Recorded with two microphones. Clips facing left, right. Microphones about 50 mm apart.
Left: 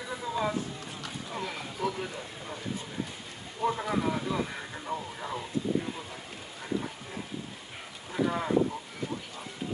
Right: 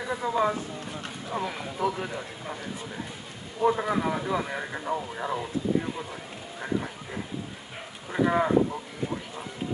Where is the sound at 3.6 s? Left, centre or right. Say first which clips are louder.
Right 4 dB; right.